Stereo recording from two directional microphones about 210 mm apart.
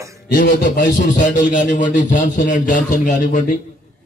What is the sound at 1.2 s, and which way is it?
A man's voice, 40° left (ahead or behind).